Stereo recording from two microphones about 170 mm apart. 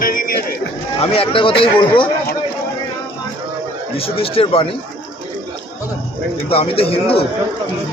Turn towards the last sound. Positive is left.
turn(degrees=35)  # may be behind; listen again after turning